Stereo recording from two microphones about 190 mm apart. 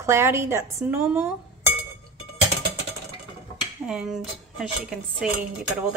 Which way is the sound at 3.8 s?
5° right (ahead or behind).